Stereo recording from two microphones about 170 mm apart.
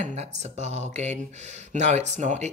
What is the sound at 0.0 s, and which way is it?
Speech, 40° right (ahead or behind).